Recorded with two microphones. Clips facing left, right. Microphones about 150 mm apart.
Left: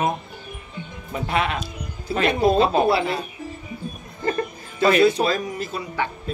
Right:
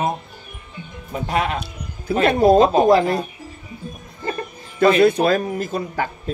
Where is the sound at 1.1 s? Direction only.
40° right (ahead or behind).